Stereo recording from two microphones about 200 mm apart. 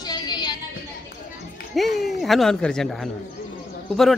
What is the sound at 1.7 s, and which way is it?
Speech, centre (ahead or behind).